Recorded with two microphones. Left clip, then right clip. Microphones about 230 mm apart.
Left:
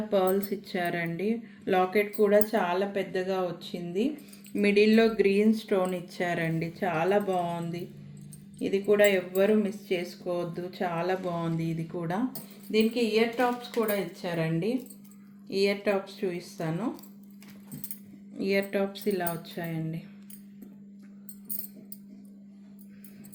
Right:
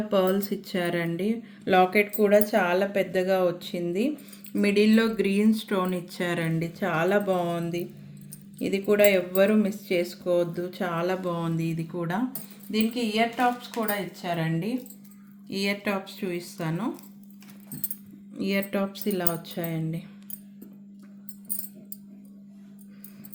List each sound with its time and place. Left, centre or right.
0.1 s speech: right
18.3 s speech: right